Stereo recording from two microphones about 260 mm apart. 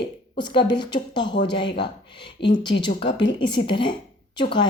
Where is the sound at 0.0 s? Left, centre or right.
Centre.